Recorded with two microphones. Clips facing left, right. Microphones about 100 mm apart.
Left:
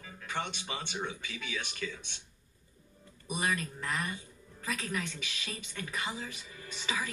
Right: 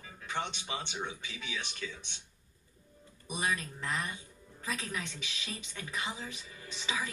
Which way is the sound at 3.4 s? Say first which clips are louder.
Left 1 dB; centre (ahead or behind).